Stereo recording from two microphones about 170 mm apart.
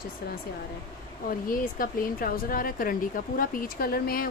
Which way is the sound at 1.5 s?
55° left (ahead or behind).